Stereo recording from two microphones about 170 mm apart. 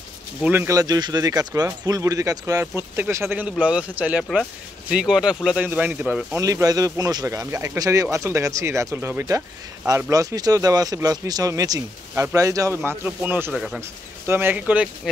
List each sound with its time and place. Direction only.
0.4 s a man's voice: 10° right (ahead or behind)